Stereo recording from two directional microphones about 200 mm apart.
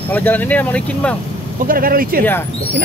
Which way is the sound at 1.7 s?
45° right (ahead or behind).